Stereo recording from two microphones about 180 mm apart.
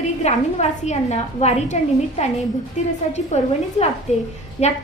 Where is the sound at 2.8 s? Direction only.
40° left (ahead or behind).